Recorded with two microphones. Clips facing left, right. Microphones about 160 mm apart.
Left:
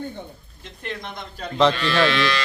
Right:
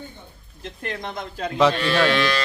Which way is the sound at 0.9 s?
40° right (ahead or behind).